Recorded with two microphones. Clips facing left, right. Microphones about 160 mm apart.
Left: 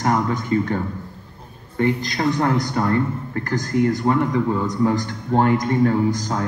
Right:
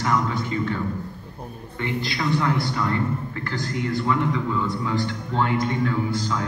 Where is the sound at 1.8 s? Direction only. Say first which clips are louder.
Left 6 dB; 45° left (ahead or behind).